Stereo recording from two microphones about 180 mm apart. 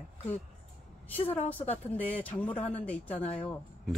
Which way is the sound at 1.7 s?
10° left (ahead or behind).